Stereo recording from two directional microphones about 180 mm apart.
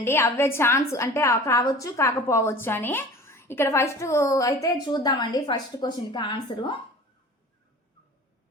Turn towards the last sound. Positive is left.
turn(degrees=25)  # may be behind; listen again after turning